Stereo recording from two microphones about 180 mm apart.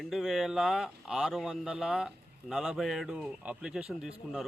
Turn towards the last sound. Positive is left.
turn(degrees=-5)  # may be behind; listen again after turning